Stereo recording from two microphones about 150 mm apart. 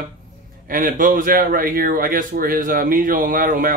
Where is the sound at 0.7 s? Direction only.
65° right (ahead or behind).